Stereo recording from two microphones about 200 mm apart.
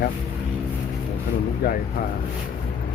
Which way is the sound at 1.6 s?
50° left (ahead or behind).